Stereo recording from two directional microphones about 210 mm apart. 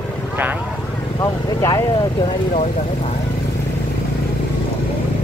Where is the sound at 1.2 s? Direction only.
15° left (ahead or behind).